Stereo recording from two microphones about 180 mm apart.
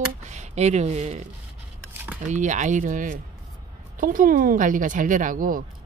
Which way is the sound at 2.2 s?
45° right (ahead or behind).